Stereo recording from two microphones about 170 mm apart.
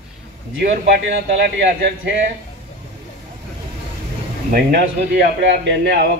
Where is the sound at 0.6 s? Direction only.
65° right (ahead or behind).